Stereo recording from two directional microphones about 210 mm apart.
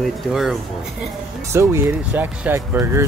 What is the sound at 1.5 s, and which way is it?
Speech, 15° right (ahead or behind).